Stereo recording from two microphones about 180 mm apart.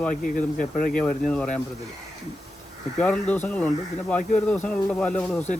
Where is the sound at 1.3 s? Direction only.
5° left (ahead or behind).